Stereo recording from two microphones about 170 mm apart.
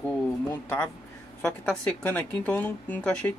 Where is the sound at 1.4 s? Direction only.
5° left (ahead or behind).